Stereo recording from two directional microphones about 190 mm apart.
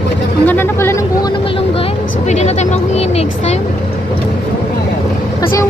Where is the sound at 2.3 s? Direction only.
35° left (ahead or behind).